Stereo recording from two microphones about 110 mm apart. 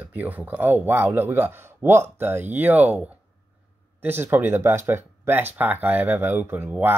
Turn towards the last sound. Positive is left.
turn(degrees=-15)  # may be behind; listen again after turning